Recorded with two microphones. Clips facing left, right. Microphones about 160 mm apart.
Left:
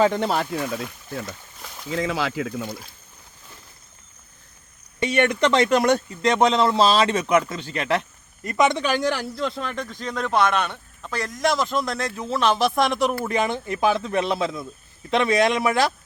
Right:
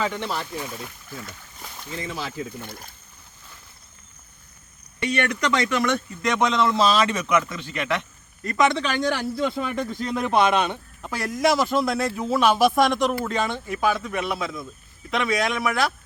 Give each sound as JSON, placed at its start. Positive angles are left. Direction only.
{"t": 0.0, "sound": "speech", "side_deg": 50}
{"t": 1.9, "sound": "speech", "side_deg": 90}
{"t": 4.9, "sound": "speech", "side_deg": 25}
{"t": 8.4, "sound": "speech", "side_deg": 20}
{"t": 8.8, "sound": "a man's voice", "side_deg": 5}